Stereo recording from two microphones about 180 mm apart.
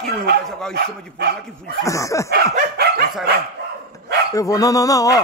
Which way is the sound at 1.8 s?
15° left (ahead or behind).